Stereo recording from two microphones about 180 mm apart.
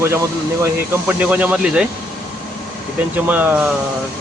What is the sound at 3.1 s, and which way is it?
Speech, 10° right (ahead or behind).